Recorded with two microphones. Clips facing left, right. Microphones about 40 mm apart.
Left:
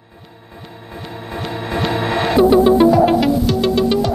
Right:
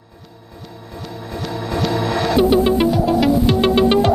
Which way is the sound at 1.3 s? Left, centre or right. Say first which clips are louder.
Left 1 dB; left.